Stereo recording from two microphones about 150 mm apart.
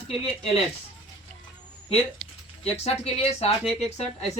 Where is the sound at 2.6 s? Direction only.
45° left (ahead or behind).